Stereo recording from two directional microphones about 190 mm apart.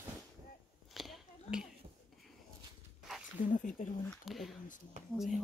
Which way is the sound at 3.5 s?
45° left (ahead or behind).